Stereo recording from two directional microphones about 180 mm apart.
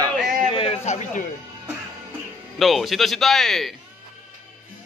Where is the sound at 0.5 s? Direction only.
30° left (ahead or behind).